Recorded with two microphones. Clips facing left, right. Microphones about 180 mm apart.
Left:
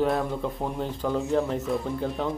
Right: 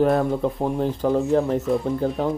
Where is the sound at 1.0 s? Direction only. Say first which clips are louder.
Right 6 dB; 45° right (ahead or behind).